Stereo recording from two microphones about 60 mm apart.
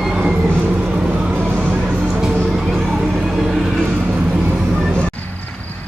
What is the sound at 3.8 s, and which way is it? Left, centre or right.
Vehicle, right.